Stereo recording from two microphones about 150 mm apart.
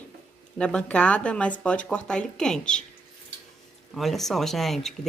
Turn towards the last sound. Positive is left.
turn(degrees=0)  # may be behind; listen again after turning